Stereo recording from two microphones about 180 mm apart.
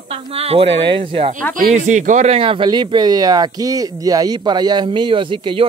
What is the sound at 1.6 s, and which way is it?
Speech, 45° right (ahead or behind).